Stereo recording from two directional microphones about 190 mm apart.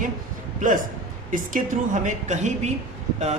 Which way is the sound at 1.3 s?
45° right (ahead or behind).